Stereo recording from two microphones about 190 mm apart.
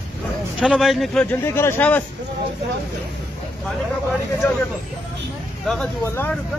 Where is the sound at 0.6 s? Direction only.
Centre (ahead or behind).